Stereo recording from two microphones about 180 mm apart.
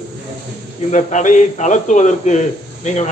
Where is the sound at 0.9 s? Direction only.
40° left (ahead or behind).